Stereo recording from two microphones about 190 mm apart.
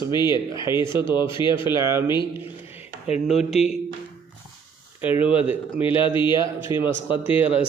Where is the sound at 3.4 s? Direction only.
Centre (ahead or behind).